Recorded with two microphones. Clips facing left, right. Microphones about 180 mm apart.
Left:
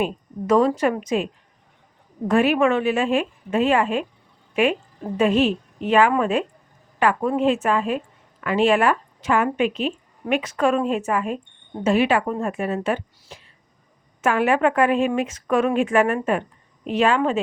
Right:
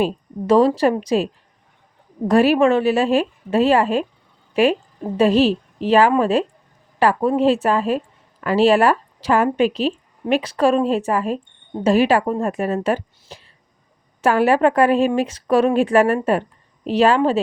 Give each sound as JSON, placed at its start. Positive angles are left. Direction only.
{"t": 0.0, "sound": "a woman's voice", "side_deg": -30}